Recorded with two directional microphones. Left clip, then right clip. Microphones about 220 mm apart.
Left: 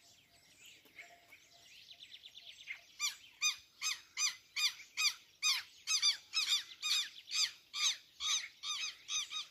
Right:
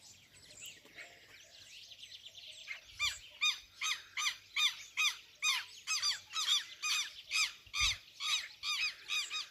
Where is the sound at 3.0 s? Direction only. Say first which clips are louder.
Right 3 dB; 50° left (ahead or behind).